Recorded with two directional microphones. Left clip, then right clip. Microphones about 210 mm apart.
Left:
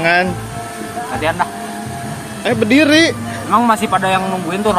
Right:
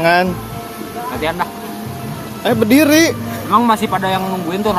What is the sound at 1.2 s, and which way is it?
Speech, centre (ahead or behind).